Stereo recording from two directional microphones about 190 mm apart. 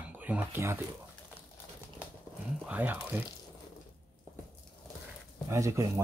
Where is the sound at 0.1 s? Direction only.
10° right (ahead or behind).